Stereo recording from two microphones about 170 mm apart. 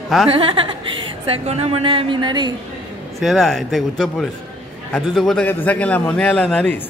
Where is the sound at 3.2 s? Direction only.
Centre (ahead or behind).